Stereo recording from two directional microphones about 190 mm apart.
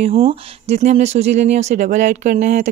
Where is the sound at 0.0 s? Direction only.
30° right (ahead or behind).